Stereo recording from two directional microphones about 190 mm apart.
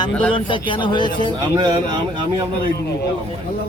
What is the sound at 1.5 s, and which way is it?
Speech, 20° right (ahead or behind).